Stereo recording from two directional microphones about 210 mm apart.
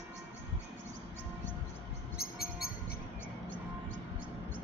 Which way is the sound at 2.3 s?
45° left (ahead or behind).